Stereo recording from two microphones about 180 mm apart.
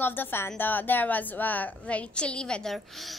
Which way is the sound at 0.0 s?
10° left (ahead or behind).